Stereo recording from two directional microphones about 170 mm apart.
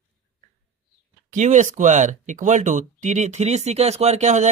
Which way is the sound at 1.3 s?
45° right (ahead or behind).